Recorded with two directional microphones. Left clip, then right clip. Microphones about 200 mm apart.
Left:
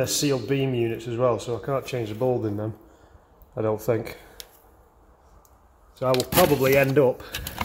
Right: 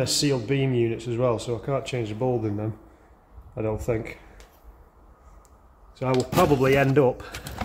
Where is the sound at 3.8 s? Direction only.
15° left (ahead or behind).